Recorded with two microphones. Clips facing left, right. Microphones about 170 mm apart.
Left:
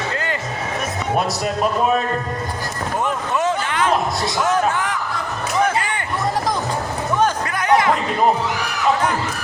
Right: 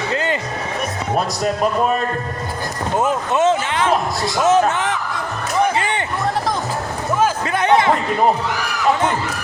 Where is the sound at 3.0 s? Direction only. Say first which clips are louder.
Right 4 dB; 25° right (ahead or behind).